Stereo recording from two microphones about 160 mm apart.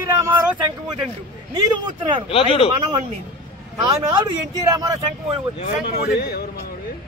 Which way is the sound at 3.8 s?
25° right (ahead or behind).